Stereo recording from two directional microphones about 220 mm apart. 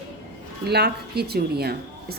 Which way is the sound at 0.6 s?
45° right (ahead or behind).